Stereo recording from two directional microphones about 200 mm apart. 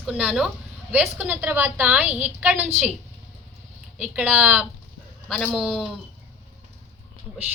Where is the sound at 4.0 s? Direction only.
5° right (ahead or behind).